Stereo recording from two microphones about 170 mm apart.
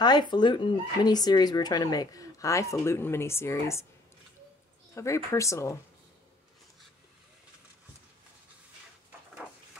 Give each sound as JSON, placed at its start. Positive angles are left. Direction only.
{"t": 0.0, "sound": "speech", "side_deg": 25}
{"t": 4.9, "sound": "speech", "side_deg": 15}